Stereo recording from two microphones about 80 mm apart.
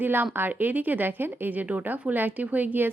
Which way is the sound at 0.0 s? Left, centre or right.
Right.